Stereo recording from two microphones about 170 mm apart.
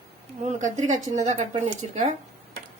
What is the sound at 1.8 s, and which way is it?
Speech, 35° right (ahead or behind).